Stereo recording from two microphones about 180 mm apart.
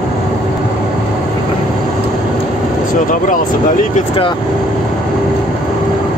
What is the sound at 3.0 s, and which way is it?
Speech, 50° left (ahead or behind).